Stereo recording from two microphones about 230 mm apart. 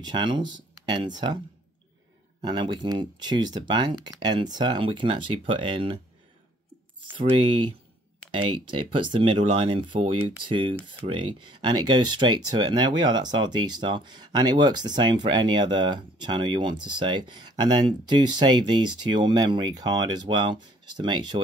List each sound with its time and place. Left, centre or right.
0.0 s speech: centre
2.4 s speech: centre
7.0 s speech: right